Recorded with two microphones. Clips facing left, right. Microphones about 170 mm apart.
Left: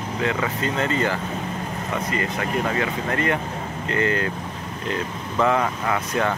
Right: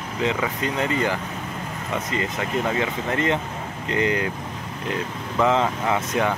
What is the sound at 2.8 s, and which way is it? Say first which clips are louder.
Speech: even; 20° right (ahead or behind).